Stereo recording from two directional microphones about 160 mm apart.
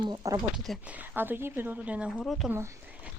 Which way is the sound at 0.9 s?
10° right (ahead or behind).